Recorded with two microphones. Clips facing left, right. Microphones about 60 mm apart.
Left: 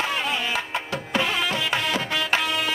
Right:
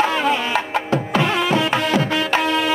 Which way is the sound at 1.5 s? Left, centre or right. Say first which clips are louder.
Right 7 dB; right.